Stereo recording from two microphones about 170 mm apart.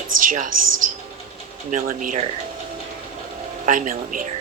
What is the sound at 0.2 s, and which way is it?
Speech, 50° right (ahead or behind).